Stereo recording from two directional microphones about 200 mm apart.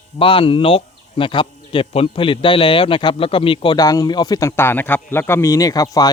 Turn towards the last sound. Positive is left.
turn(degrees=20)  # may be behind; listen again after turning